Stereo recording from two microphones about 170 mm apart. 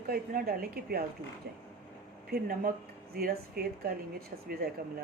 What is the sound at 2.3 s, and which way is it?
Speech, 60° right (ahead or behind).